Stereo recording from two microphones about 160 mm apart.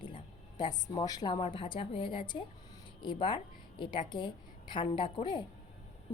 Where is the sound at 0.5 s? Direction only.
25° left (ahead or behind).